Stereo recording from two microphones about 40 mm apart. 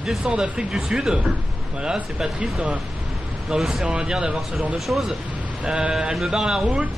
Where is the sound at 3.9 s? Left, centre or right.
Right.